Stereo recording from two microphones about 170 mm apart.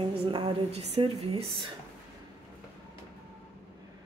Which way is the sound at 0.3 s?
30° right (ahead or behind).